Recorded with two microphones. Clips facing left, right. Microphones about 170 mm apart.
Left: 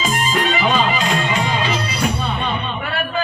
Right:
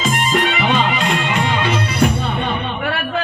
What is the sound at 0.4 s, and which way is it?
Music, 65° right (ahead or behind).